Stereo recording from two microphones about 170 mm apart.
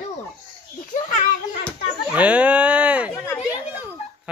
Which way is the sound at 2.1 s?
10° right (ahead or behind).